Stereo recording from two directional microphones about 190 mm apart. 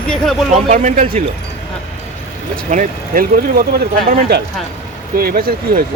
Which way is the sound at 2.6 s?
45° right (ahead or behind).